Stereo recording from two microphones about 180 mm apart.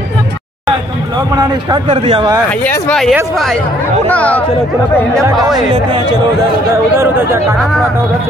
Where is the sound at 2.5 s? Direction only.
10° left (ahead or behind).